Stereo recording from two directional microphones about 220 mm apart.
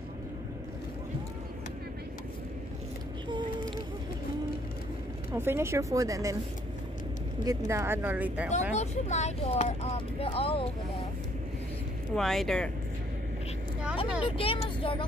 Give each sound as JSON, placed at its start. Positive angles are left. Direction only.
{"t": 5.3, "sound": "speech", "side_deg": -10}
{"t": 7.4, "sound": "speech", "side_deg": -10}
{"t": 8.7, "sound": "speech", "side_deg": 30}
{"t": 12.2, "sound": "speech", "side_deg": 0}
{"t": 14.2, "sound": "speech", "side_deg": 25}